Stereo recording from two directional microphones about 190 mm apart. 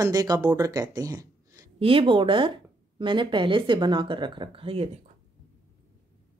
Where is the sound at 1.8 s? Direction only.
30° right (ahead or behind).